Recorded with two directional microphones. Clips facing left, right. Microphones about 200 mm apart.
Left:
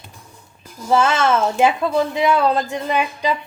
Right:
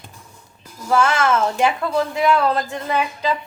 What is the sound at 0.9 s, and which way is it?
A woman's voice, 25° left (ahead or behind).